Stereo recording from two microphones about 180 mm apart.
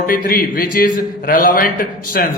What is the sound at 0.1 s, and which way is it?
A man's voice, 55° left (ahead or behind).